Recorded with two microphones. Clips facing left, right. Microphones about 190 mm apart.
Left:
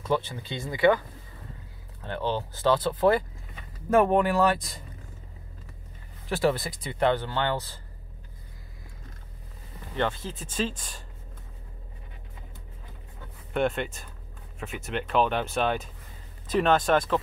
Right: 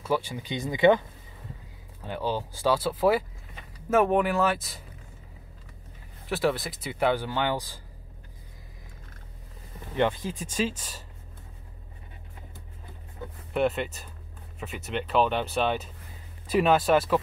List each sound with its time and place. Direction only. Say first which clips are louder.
0.0 s speech: even; 10° right (ahead or behind)
2.0 s speech: even; 10° right (ahead or behind)
6.2 s speech: left 1 dB; centre (ahead or behind)
9.9 s speech: right 3 dB; 15° right (ahead or behind)
13.5 s speech: right 1 dB; centre (ahead or behind)